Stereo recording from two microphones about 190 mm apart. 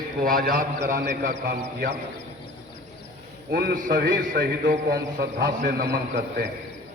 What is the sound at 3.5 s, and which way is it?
A man's voice, 55° right (ahead or behind).